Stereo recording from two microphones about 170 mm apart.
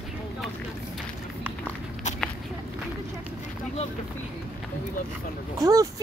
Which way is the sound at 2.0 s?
45° left (ahead or behind).